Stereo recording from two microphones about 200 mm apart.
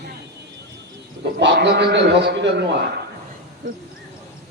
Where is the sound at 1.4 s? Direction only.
60° right (ahead or behind).